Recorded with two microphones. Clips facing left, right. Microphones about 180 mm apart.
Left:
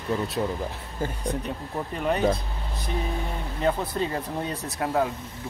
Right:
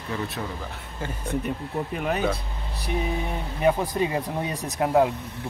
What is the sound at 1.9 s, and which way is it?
Speech, 5° right (ahead or behind).